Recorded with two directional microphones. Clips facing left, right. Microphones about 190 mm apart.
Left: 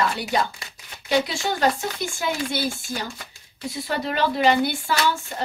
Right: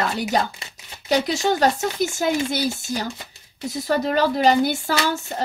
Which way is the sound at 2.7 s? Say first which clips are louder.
Right 4 dB; 20° right (ahead or behind).